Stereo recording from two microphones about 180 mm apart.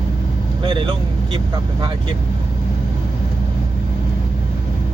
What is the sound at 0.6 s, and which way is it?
Speech, 25° right (ahead or behind).